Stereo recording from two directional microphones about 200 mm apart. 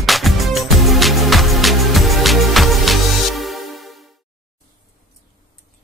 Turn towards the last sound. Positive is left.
turn(degrees=0)  # may be behind; listen again after turning